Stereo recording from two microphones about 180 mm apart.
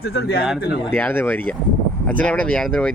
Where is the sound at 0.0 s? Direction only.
65° left (ahead or behind).